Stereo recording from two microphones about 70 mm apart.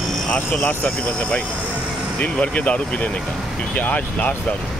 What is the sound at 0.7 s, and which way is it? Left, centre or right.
Speech, centre.